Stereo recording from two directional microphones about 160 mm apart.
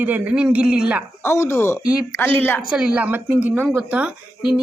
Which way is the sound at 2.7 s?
5° right (ahead or behind).